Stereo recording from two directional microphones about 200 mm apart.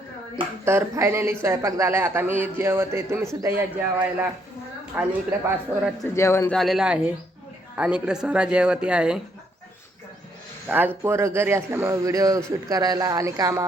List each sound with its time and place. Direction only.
0.6 s speech: 15° right (ahead or behind)
6.1 s a man's voice: 15° left (ahead or behind)
6.5 s speech: centre (ahead or behind)
10.7 s speech: 10° right (ahead or behind)